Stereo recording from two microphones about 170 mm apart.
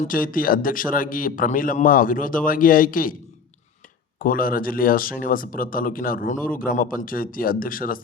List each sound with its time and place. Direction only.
0.0 s speech: 55° left (ahead or behind)
4.2 s speech: 55° left (ahead or behind)